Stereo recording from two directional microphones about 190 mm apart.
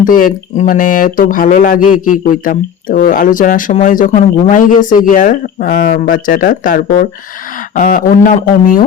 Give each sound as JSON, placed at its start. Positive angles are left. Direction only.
{"t": 0.0, "sound": "speech", "side_deg": 45}